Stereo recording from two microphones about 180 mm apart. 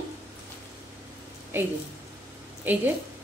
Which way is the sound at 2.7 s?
10° right (ahead or behind).